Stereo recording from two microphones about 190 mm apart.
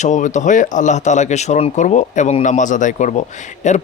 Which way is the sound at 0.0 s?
40° left (ahead or behind).